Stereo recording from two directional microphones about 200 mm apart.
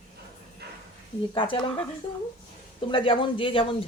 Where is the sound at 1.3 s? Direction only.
25° left (ahead or behind).